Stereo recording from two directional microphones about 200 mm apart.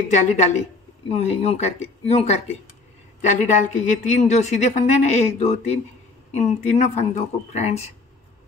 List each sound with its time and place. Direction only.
0.1 s a woman's voice: 35° left (ahead or behind)